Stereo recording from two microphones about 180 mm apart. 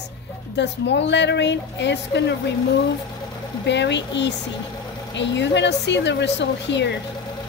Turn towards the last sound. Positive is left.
turn(degrees=75)  # may be behind; listen again after turning